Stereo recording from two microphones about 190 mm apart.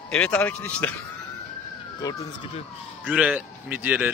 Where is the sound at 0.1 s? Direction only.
5° left (ahead or behind).